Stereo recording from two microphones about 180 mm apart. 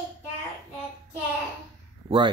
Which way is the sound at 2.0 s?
25° right (ahead or behind).